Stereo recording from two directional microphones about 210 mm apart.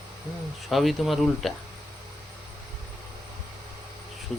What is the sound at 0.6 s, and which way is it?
Speech, centre (ahead or behind).